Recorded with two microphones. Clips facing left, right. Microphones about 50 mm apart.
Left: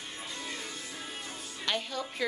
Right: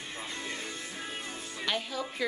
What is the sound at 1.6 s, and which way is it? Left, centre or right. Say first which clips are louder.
Speech: even; centre.